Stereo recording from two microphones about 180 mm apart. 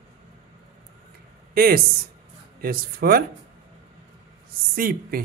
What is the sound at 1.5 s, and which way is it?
A man's voice, 55° right (ahead or behind).